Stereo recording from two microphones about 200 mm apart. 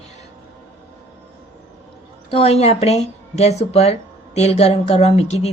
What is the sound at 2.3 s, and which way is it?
Speech, 30° left (ahead or behind).